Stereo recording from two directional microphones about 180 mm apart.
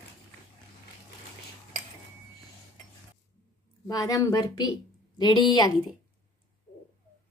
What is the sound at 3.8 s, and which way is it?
Speech, 20° left (ahead or behind).